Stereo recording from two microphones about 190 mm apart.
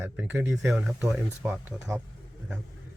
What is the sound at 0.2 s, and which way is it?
Speech, 10° right (ahead or behind).